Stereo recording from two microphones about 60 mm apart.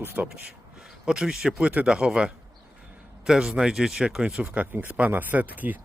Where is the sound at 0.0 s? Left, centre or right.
Right.